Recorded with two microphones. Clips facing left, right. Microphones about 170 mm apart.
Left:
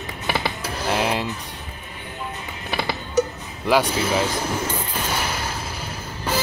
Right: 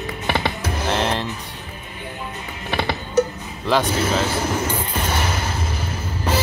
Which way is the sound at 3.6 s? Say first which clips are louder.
Even; 10° left (ahead or behind).